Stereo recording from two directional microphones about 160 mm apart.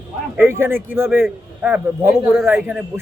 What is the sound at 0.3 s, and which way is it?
Speech, 15° right (ahead or behind).